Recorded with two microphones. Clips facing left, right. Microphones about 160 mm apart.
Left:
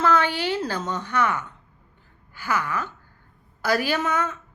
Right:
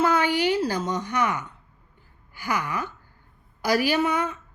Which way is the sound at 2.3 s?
15° right (ahead or behind).